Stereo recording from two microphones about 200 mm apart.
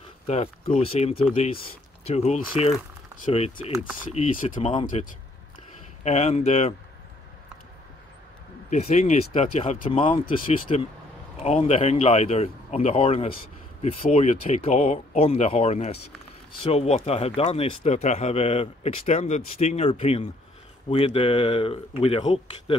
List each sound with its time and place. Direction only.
0.3 s speech: 30° left (ahead or behind)
6.0 s speech: 35° left (ahead or behind)
8.6 s speech: 35° left (ahead or behind)